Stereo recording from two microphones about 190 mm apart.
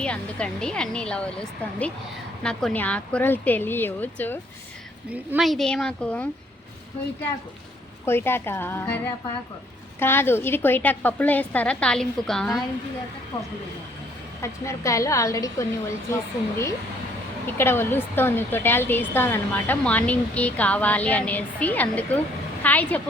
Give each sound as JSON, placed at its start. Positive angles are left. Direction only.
{"t": 0.0, "sound": "a woman's voice", "side_deg": 5}
{"t": 5.1, "sound": "speech", "side_deg": -5}
{"t": 8.0, "sound": "a woman's voice", "side_deg": 10}
{"t": 10.0, "sound": "a woman's voice", "side_deg": 10}
{"t": 14.4, "sound": "a woman's voice", "side_deg": 15}